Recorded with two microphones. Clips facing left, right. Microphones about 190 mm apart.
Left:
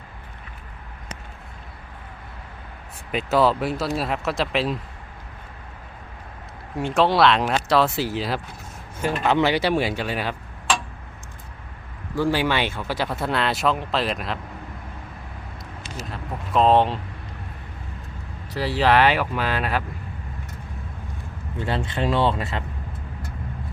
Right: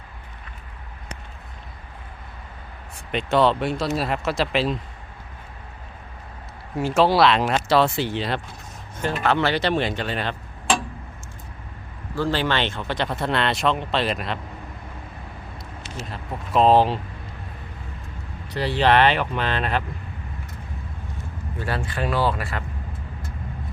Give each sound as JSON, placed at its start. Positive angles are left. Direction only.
{"t": 3.1, "sound": "speech", "side_deg": 5}
{"t": 6.7, "sound": "speech", "side_deg": 0}
{"t": 9.2, "sound": "speech", "side_deg": 15}
{"t": 12.1, "sound": "speech", "side_deg": 10}
{"t": 16.0, "sound": "speech", "side_deg": 0}
{"t": 18.5, "sound": "speech", "side_deg": 5}
{"t": 21.6, "sound": "speech", "side_deg": 20}